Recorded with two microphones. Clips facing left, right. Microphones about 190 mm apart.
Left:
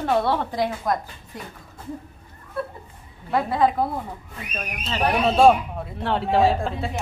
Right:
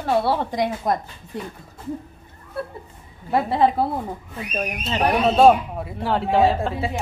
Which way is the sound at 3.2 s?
30° right (ahead or behind).